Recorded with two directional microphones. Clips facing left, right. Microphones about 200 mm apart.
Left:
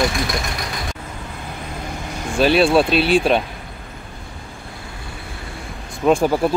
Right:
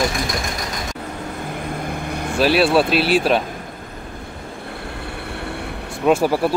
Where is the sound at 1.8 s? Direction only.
55° right (ahead or behind).